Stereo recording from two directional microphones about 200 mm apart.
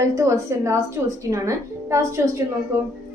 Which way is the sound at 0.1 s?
15° right (ahead or behind).